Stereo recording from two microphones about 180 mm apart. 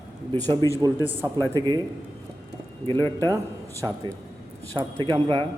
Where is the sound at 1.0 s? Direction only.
15° right (ahead or behind).